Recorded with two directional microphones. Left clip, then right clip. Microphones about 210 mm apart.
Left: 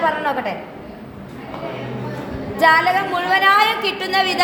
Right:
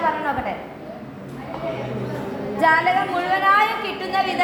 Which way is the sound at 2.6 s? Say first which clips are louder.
Left 3 dB; 60° left (ahead or behind).